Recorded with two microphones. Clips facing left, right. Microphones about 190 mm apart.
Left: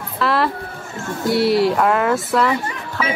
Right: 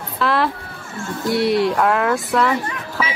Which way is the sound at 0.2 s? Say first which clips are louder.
Even; centre (ahead or behind).